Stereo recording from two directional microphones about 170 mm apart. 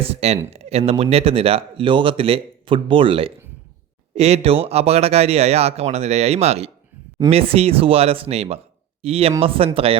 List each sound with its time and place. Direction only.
0.0 s speech: 35° right (ahead or behind)